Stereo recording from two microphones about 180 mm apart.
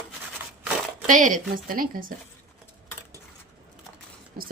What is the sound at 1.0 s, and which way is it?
Speech, 45° right (ahead or behind).